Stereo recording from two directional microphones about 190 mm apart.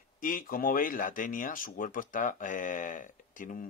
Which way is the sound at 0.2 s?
45° left (ahead or behind).